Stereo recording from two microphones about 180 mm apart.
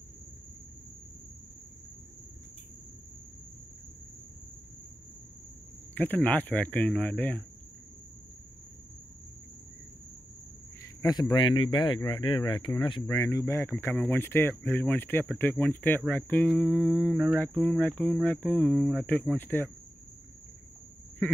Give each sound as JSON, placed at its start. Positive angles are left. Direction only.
{"t": 5.9, "sound": "speech", "side_deg": 10}
{"t": 10.8, "sound": "speech", "side_deg": 20}
{"t": 13.9, "sound": "humming", "side_deg": 5}
{"t": 14.2, "sound": "speech", "side_deg": 10}
{"t": 16.6, "sound": "humming", "side_deg": -5}
{"t": 17.4, "sound": "speech", "side_deg": 5}
{"t": 19.3, "sound": "speech", "side_deg": 10}